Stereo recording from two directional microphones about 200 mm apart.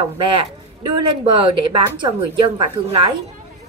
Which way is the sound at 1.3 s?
25° right (ahead or behind).